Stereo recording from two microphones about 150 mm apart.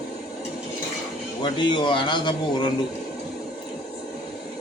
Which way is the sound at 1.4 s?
30° left (ahead or behind).